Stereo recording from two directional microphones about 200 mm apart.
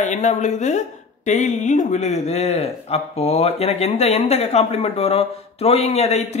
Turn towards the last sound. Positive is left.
turn(degrees=35)  # may be behind; listen again after turning